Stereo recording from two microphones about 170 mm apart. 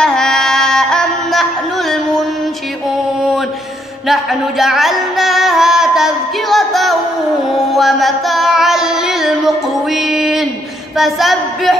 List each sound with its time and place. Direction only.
0.0 s music: 5° left (ahead or behind)
4.1 s music: centre (ahead or behind)
9.9 s speech: centre (ahead or behind)